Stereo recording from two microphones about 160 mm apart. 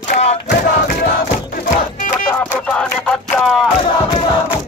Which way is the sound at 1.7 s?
55° left (ahead or behind).